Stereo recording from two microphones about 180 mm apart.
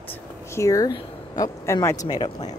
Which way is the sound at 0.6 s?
20° left (ahead or behind).